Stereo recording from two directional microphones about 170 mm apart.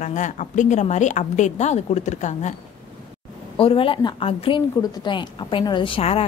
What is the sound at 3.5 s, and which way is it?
A woman's voice, 30° left (ahead or behind).